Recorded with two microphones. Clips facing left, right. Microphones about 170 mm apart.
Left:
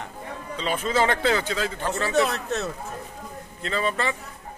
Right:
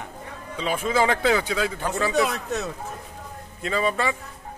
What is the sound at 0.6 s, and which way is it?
Speech, 5° right (ahead or behind).